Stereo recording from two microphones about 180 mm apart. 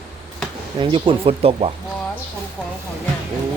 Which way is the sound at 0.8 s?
30° right (ahead or behind).